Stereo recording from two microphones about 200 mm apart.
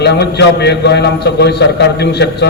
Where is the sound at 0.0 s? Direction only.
55° left (ahead or behind).